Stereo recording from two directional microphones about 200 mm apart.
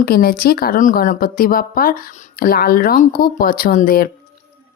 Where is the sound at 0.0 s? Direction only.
50° left (ahead or behind).